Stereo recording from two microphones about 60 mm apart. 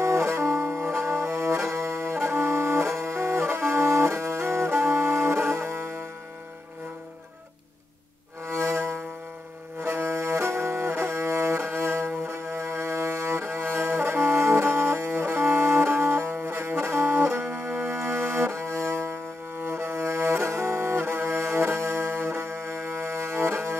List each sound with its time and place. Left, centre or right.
0.0 s music: right
8.5 s music: right
19.6 s cello: right